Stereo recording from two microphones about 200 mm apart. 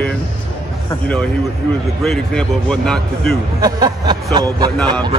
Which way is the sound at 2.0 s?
Centre (ahead or behind).